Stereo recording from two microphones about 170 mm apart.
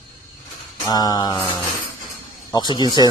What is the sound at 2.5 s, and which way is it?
Speech, 25° left (ahead or behind).